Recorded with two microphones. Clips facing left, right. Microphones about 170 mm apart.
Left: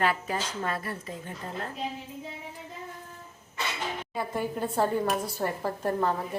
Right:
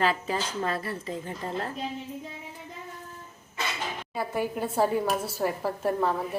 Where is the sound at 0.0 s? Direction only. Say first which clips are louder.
Right 1 dB; 30° right (ahead or behind).